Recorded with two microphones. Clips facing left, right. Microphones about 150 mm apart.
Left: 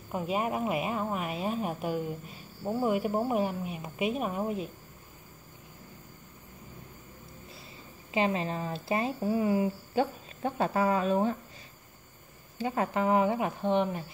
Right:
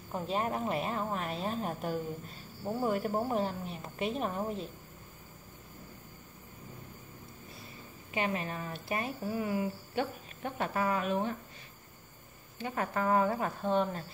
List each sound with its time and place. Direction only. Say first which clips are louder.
0.1 s speech: left 3 dB; 10° left (ahead or behind)
8.1 s speech: left 5 dB; 25° left (ahead or behind)
12.5 s speech: left 4 dB; 25° left (ahead or behind)